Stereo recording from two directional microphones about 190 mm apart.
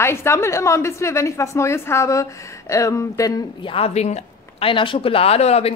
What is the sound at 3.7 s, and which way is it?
Speech, 30° left (ahead or behind).